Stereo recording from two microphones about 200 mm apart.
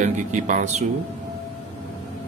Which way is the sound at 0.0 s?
40° right (ahead or behind).